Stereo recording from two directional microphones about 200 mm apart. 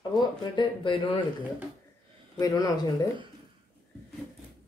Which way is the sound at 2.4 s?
20° left (ahead or behind).